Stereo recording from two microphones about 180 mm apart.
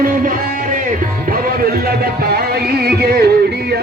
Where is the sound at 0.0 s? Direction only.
50° right (ahead or behind).